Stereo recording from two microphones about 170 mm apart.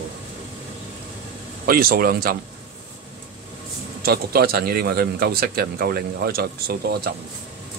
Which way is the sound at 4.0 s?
65° right (ahead or behind).